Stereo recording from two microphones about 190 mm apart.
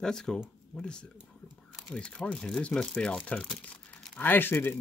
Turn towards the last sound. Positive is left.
turn(degrees=10)  # may be behind; listen again after turning